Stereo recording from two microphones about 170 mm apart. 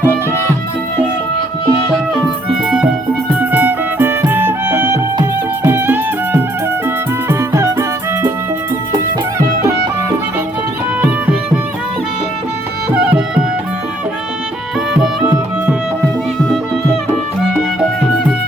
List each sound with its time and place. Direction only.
2.2 s music: 5° right (ahead or behind)
11.0 s music: 10° right (ahead or behind)
12.9 s music: 5° right (ahead or behind)